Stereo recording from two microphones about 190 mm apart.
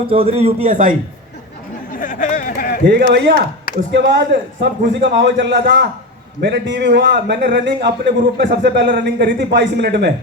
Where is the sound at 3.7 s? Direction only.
60° right (ahead or behind).